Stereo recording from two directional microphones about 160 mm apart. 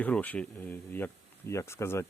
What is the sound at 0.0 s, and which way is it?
Speech, 10° left (ahead or behind).